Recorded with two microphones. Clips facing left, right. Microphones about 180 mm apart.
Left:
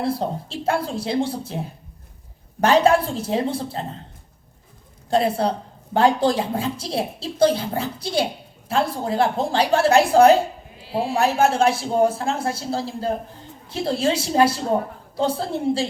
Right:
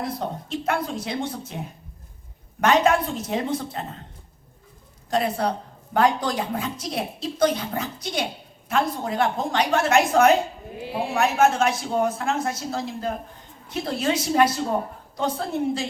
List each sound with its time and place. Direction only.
0.0 s a man's voice: 30° left (ahead or behind)
5.1 s a woman's voice: 30° left (ahead or behind)
10.8 s a sound: 55° right (ahead or behind)
11.1 s a man's voice: 30° left (ahead or behind)